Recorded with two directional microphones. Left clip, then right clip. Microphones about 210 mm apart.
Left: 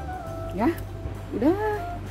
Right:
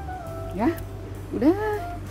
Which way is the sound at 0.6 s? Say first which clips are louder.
Even; 10° right (ahead or behind).